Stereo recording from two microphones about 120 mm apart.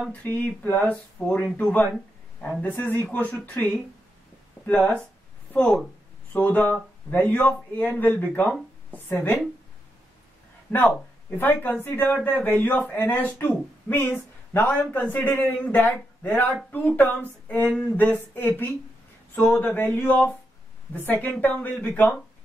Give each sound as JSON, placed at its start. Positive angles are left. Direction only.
{"t": 0.1, "sound": "speech", "side_deg": 15}
{"t": 10.7, "sound": "a sound", "side_deg": 10}
{"t": 11.3, "sound": "speech", "side_deg": 15}